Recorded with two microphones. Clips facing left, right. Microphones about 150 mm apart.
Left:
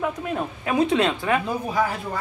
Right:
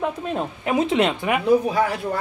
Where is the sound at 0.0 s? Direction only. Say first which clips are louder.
Right 1 dB; 20° right (ahead or behind).